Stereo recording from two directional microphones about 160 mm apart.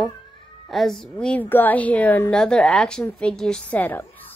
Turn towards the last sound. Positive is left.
turn(degrees=10)  # may be behind; listen again after turning